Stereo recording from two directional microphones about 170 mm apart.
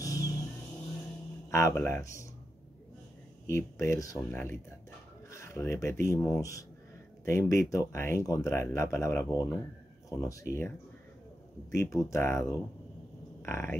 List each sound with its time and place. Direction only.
0.0 s vehicle: 20° left (ahead or behind)
1.5 s speech: 15° left (ahead or behind)
3.4 s speech: 15° left (ahead or behind)
11.7 s speech: 20° left (ahead or behind)